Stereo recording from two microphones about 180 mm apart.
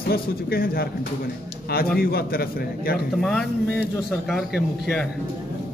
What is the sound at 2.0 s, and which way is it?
A man's voice, 55° left (ahead or behind).